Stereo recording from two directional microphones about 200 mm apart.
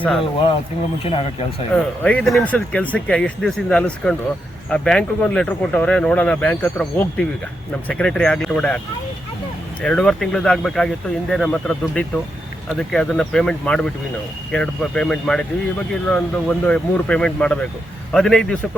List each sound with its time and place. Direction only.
0.0 s speech: centre (ahead or behind)
1.0 s speech: 30° left (ahead or behind)
1.7 s speech: 5° left (ahead or behind)
9.8 s speech: 5° left (ahead or behind)